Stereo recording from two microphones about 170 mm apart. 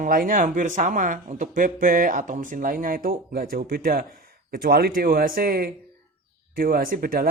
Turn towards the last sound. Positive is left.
turn(degrees=-55)  # may be behind; listen again after turning